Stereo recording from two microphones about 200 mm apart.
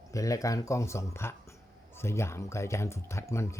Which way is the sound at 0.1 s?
15° left (ahead or behind).